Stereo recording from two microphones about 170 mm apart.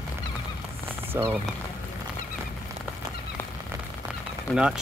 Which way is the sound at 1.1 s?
15° right (ahead or behind).